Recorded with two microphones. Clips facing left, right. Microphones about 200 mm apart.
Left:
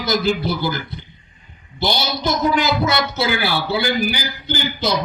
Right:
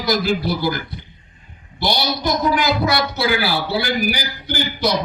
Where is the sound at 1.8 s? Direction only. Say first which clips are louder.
Even; 25° left (ahead or behind).